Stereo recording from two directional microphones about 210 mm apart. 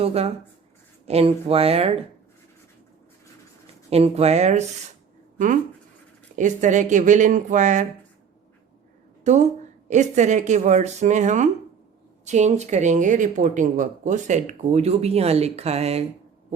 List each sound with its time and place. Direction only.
0.0 s speech: 30° right (ahead or behind)
3.8 s speech: 30° right (ahead or behind)
6.3 s speech: 35° right (ahead or behind)
9.2 s a woman's voice: 35° right (ahead or behind)